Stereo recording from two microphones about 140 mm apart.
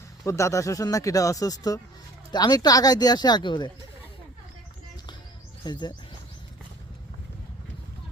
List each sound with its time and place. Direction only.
0.3 s speech: 20° left (ahead or behind)
5.6 s speech: 30° left (ahead or behind)